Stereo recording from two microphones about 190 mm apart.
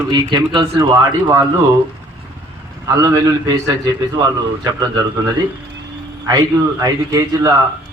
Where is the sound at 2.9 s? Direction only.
15° right (ahead or behind).